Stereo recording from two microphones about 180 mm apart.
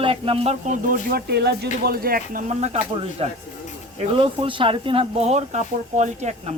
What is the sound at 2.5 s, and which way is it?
Speech, 40° right (ahead or behind).